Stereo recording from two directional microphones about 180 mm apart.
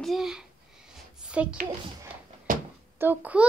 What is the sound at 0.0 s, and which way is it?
A woman's voice, centre (ahead or behind).